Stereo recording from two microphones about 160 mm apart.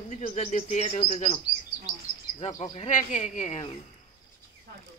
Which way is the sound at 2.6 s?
50° left (ahead or behind).